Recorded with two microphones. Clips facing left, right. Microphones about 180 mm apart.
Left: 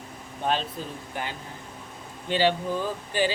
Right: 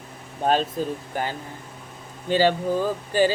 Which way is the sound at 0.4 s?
45° right (ahead or behind).